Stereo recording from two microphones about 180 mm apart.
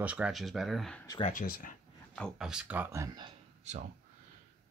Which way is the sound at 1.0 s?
30° left (ahead or behind).